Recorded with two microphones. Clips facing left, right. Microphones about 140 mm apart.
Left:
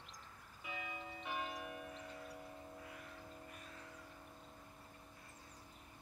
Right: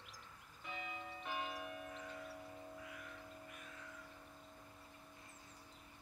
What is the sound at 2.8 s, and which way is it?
Music, 35° left (ahead or behind).